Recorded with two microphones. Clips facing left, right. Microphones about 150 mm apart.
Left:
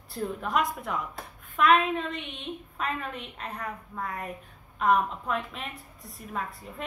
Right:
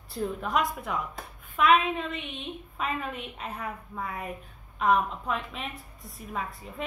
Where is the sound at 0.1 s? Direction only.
Centre (ahead or behind).